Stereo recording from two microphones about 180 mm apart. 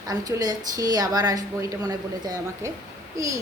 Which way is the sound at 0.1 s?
20° right (ahead or behind).